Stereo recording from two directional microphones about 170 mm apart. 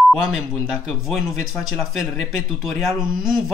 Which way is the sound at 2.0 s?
Centre (ahead or behind).